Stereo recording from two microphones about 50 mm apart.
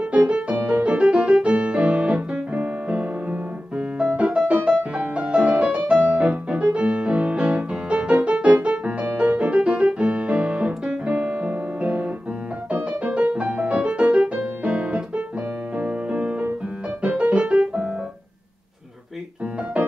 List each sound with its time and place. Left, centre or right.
0.3 s music: right